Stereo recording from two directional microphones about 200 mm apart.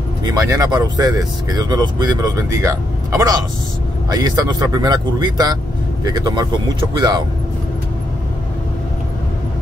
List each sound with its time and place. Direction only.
0.2 s speech: 15° right (ahead or behind)